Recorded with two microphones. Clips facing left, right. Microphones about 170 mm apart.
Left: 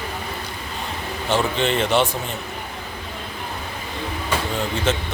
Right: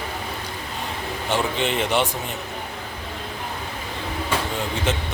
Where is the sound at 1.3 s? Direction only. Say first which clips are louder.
Left 3 dB; 15° right (ahead or behind).